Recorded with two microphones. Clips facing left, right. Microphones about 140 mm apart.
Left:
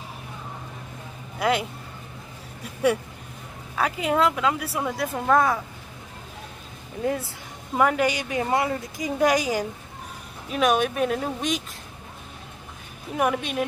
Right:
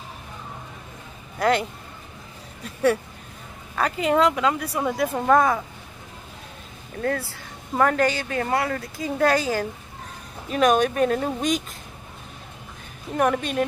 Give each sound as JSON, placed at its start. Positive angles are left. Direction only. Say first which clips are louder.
{"t": 1.4, "sound": "speech", "louder": "right 2 dB", "side_deg": 5}
{"t": 3.7, "sound": "speech", "louder": "right 2 dB", "side_deg": 5}
{"t": 7.0, "sound": "speech", "louder": "even", "side_deg": 15}
{"t": 10.5, "sound": "speech", "louder": "right 3 dB", "side_deg": 0}
{"t": 13.1, "sound": "speech", "louder": "right 2 dB", "side_deg": 5}